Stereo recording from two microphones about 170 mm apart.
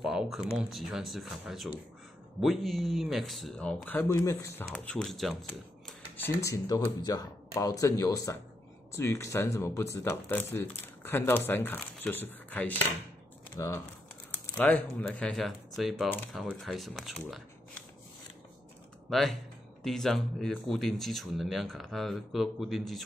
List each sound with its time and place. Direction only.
0.0 s speech: centre (ahead or behind); by 4.6 s 15° left (ahead or behind)
4.6 s speech: 5° left (ahead or behind)
5.9 s a sound: 10° left (ahead or behind)
6.4 s speech: 20° left (ahead or behind); by 17.4 s centre (ahead or behind)
19.0 s speech: centre (ahead or behind)